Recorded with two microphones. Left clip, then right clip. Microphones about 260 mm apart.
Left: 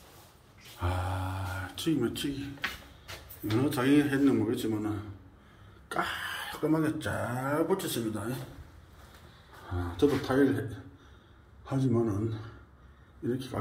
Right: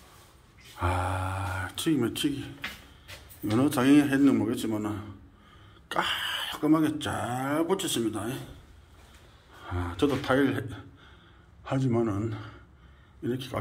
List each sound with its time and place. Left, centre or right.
0.7 s a sound: centre
3.6 s a man's voice: centre
9.7 s a man's voice: centre